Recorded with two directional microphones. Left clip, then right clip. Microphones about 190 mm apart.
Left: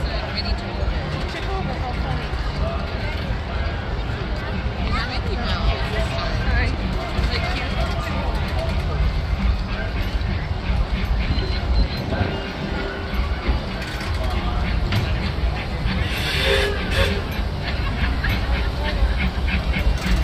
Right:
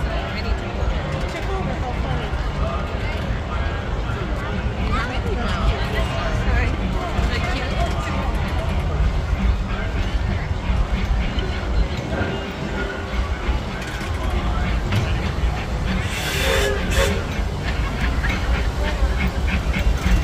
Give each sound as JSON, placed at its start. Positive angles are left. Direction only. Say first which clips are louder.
{"t": 16.3, "sound": "vehicle", "louder": "even", "side_deg": -15}